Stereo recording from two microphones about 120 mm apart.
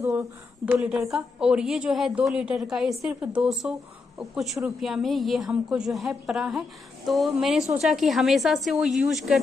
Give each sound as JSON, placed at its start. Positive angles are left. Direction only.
{"t": 0.0, "sound": "speech", "side_deg": -25}
{"t": 0.7, "sound": "a woman's voice", "side_deg": -10}